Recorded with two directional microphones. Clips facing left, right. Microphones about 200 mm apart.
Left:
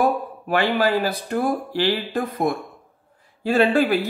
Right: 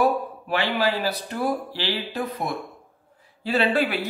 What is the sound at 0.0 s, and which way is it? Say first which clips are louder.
Speech: left 1 dB; 50° left (ahead or behind).